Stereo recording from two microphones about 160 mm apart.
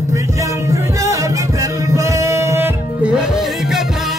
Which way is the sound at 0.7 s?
20° right (ahead or behind).